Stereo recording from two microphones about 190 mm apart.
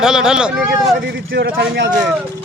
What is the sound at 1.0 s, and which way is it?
Speech, 60° right (ahead or behind).